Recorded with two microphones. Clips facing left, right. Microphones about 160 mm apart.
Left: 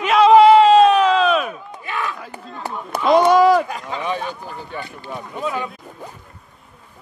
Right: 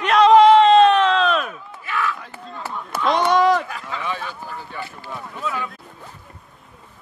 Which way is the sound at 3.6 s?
20° left (ahead or behind).